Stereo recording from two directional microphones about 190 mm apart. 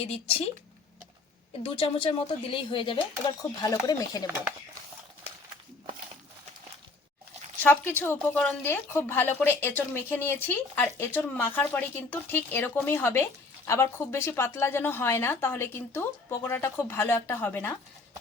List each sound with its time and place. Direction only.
0.0 s speech: 30° left (ahead or behind)
1.6 s a woman's voice: 30° left (ahead or behind)
7.6 s a woman's voice: 10° left (ahead or behind)